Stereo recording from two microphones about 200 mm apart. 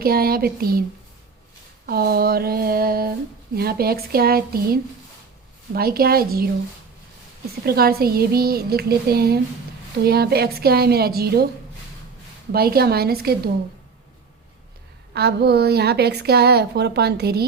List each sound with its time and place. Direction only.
0.0 s speech: 50° right (ahead or behind)
1.9 s speech: 50° right (ahead or behind)
7.6 s speech: 50° right (ahead or behind)
12.5 s speech: 50° right (ahead or behind)
15.1 s a woman's voice: 55° right (ahead or behind)